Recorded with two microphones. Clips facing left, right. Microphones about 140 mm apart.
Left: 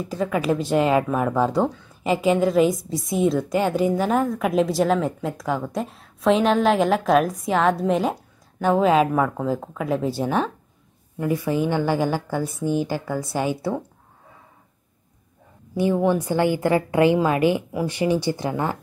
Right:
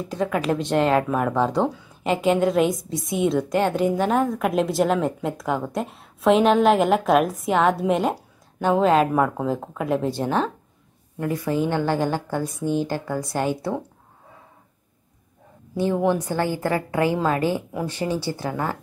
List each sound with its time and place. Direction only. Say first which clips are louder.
0.0 s a woman's voice: even; centre (ahead or behind)
15.7 s a woman's voice: left 1 dB; 10° left (ahead or behind)